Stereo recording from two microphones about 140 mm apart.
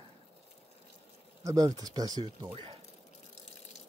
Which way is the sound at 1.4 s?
25° right (ahead or behind).